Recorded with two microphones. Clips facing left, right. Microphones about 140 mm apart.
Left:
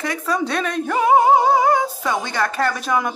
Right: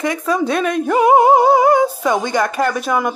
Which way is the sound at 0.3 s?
5° right (ahead or behind).